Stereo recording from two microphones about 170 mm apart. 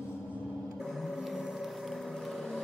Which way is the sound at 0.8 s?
Centre (ahead or behind).